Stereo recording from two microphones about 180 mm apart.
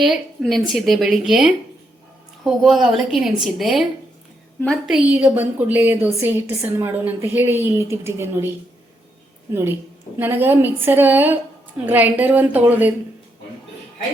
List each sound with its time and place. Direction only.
0.0 s a woman's voice: centre (ahead or behind)